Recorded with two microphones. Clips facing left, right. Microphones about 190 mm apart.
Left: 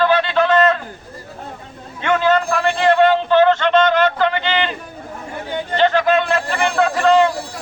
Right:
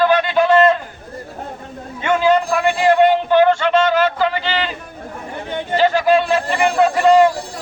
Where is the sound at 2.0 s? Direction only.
10° right (ahead or behind).